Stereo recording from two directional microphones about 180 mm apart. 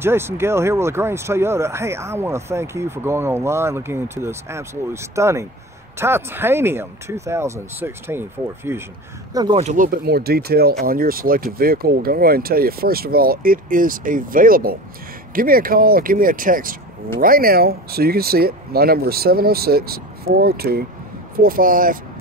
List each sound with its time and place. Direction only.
0.0 s speech: 15° right (ahead or behind)
9.6 s speech: 45° right (ahead or behind)